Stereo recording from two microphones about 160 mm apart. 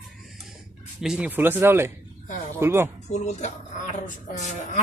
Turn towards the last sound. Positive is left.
turn(degrees=50)  # may be behind; listen again after turning